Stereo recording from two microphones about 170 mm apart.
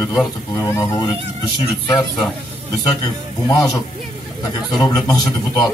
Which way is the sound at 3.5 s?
20° left (ahead or behind).